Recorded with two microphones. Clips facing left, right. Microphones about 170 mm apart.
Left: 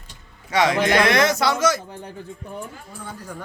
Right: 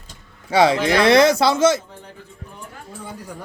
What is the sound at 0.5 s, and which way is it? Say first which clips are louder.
A man's voice: right 2 dB; 30° right (ahead or behind).